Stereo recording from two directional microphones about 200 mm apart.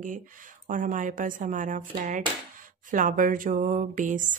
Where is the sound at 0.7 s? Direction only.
40° right (ahead or behind).